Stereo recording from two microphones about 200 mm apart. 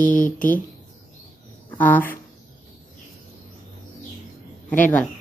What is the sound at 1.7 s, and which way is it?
Speech, 10° left (ahead or behind).